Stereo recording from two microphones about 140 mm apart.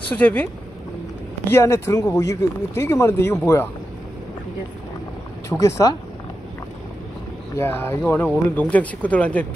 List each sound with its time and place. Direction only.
0.2 s speech: 10° left (ahead or behind)
1.5 s speech: 20° left (ahead or behind)
5.5 s speech: 20° left (ahead or behind)
7.5 s speech: 15° left (ahead or behind)